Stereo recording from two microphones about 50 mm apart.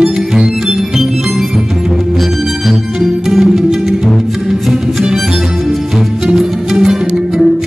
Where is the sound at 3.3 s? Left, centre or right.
Centre.